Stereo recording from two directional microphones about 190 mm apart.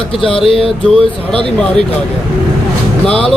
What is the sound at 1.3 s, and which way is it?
Speech, 30° right (ahead or behind).